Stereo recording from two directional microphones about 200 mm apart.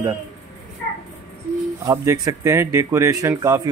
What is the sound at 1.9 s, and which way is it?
Speech, 15° right (ahead or behind).